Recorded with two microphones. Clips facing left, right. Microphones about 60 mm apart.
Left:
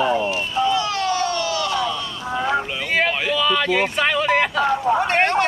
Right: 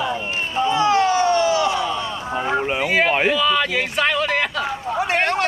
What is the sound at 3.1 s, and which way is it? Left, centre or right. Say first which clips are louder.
Speech: right 4 dB; right.